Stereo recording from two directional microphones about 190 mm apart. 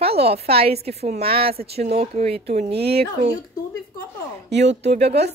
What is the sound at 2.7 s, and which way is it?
Speech, 55° right (ahead or behind).